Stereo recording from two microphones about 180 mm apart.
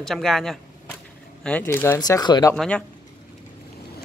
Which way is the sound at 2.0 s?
20° left (ahead or behind).